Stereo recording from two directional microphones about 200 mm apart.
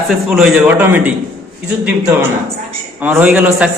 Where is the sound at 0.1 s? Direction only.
Centre (ahead or behind).